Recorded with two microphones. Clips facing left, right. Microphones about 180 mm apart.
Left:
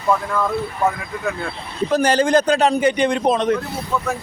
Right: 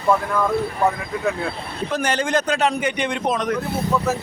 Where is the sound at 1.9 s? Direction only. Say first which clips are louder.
Left 6 dB; 35° left (ahead or behind).